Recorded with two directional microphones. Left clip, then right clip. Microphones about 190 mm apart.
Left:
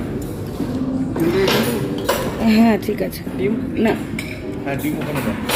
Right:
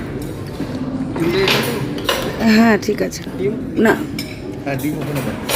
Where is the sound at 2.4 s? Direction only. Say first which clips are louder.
Right 4 dB; 20° right (ahead or behind).